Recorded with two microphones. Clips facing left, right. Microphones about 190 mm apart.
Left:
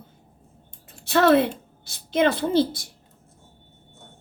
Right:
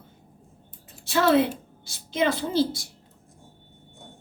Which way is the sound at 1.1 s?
60° left (ahead or behind).